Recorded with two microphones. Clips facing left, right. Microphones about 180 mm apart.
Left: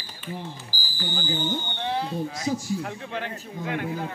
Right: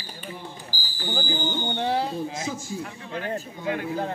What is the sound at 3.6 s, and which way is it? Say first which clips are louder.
Speech: even; 60° left (ahead or behind).